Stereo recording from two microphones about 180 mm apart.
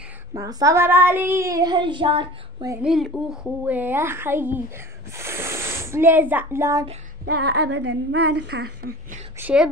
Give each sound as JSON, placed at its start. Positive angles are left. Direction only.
{"t": 0.3, "sound": "child singing", "side_deg": -20}
{"t": 2.8, "sound": "a woman's voice", "side_deg": 0}
{"t": 7.4, "sound": "a woman's voice", "side_deg": -70}
{"t": 9.4, "sound": "a woman's voice", "side_deg": -5}